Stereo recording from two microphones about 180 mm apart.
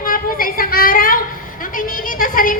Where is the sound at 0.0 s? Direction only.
50° left (ahead or behind).